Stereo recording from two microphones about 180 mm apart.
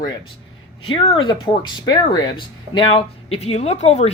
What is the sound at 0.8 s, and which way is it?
Speech, 30° left (ahead or behind).